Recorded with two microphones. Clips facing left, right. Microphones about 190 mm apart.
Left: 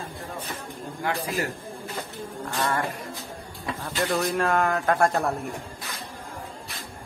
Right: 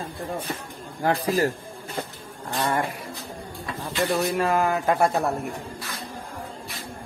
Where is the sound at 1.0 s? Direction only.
40° right (ahead or behind).